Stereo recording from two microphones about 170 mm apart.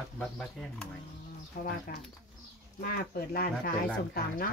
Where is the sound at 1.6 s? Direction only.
55° left (ahead or behind).